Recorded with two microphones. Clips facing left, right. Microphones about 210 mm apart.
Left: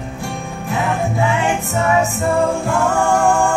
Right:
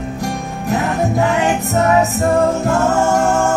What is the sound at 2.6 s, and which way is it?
A capella, 40° right (ahead or behind).